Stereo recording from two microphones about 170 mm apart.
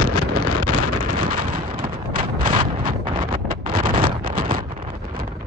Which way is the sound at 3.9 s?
30° right (ahead or behind).